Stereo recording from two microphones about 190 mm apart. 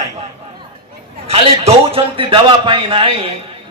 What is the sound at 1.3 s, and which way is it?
A man's voice, 30° right (ahead or behind).